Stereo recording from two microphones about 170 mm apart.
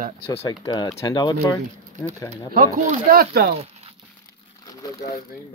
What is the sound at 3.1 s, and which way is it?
Speech, 65° right (ahead or behind).